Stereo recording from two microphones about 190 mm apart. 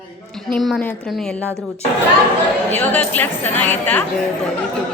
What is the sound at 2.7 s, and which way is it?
Speech, 10° left (ahead or behind).